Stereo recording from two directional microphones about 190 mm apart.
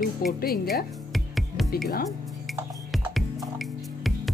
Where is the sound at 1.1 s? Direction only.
Centre (ahead or behind).